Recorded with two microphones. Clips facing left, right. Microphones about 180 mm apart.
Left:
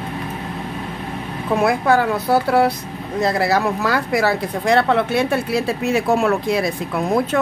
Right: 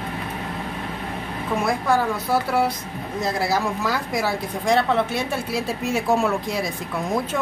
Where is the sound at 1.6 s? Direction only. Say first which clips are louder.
Left 5 dB; 65° left (ahead or behind).